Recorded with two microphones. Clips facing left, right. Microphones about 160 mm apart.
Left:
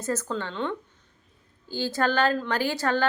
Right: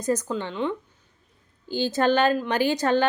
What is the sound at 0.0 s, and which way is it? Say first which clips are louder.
A woman's voice: right 3 dB; 15° right (ahead or behind).